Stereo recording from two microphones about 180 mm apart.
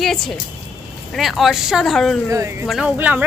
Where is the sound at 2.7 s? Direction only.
5° right (ahead or behind).